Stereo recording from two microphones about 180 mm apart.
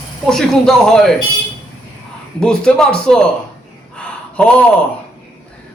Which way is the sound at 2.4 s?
5° left (ahead or behind).